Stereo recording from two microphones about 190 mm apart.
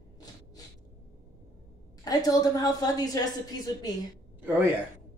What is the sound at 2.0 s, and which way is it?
A woman's voice, 20° left (ahead or behind).